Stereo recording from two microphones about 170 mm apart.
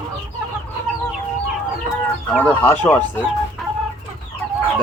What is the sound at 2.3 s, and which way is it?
Speech, 10° left (ahead or behind).